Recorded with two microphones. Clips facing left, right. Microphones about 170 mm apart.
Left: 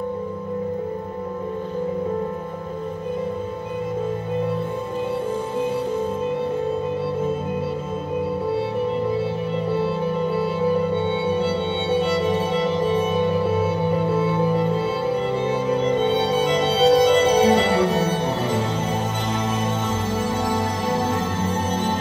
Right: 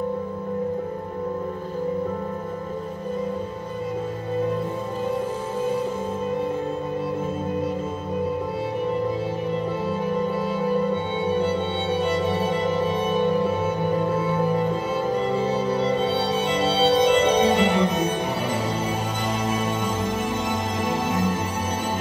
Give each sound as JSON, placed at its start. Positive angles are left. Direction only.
{"t": 15.3, "sound": "music", "side_deg": -40}